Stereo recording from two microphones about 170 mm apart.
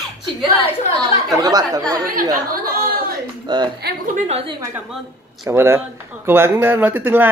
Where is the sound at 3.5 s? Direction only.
25° right (ahead or behind).